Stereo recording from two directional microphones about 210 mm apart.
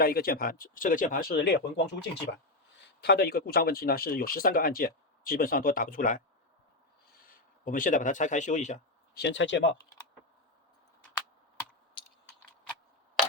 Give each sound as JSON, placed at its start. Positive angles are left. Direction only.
{"t": 0.0, "sound": "speech", "side_deg": 45}
{"t": 7.3, "sound": "speech", "side_deg": 40}
{"t": 9.1, "sound": "speech", "side_deg": 60}